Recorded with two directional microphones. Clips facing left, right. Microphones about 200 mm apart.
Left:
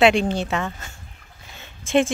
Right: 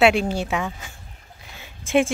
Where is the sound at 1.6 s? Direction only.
10° right (ahead or behind).